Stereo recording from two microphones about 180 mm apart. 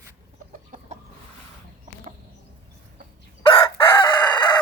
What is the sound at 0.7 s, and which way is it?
Chicken, 50° right (ahead or behind).